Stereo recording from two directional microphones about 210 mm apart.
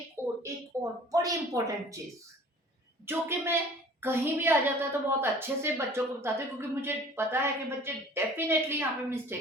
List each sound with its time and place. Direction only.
0.4 s speech: 15° right (ahead or behind)
3.1 s a woman's voice: 10° right (ahead or behind)